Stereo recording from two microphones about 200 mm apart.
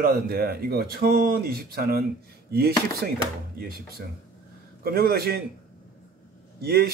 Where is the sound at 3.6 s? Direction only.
50° right (ahead or behind).